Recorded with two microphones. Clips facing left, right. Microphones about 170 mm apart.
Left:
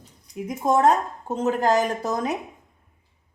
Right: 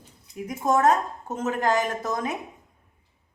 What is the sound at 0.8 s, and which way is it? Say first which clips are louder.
Speech: left 2 dB; 30° left (ahead or behind).